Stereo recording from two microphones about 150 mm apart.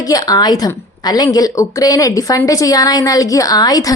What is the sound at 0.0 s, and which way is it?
A woman's voice, 25° left (ahead or behind).